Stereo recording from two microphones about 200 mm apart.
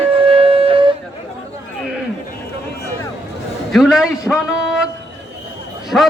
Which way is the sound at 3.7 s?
Centre (ahead or behind).